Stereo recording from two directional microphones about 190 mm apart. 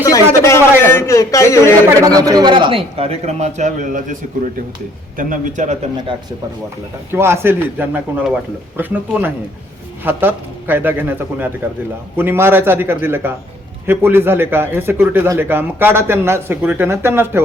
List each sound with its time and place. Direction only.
0.4 s a man's voice: 10° left (ahead or behind)
2.0 s a man's voice: 20° right (ahead or behind); by 5.7 s 40° right (ahead or behind)
7.1 s speech: 10° right (ahead or behind)